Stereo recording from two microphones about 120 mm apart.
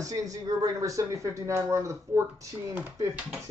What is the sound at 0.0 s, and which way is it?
Speech, 30° right (ahead or behind).